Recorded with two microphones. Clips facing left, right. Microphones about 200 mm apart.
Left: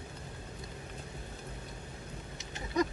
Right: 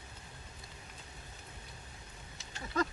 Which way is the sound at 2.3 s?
20° left (ahead or behind).